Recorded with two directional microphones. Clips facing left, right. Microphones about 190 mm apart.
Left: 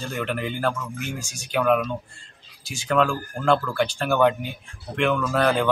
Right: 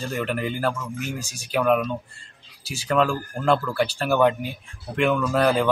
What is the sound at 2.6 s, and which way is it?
Speech, 35° right (ahead or behind).